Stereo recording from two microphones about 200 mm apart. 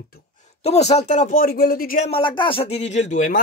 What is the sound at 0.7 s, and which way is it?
Speech, 35° left (ahead or behind).